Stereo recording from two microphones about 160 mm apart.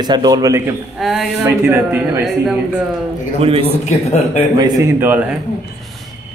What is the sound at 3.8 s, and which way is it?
Speech, 45° left (ahead or behind).